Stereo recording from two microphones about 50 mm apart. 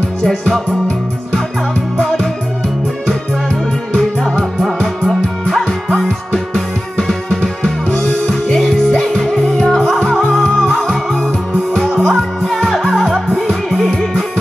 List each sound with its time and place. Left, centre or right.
0.2 s music: centre
2.0 s music: centre
4.0 s music: centre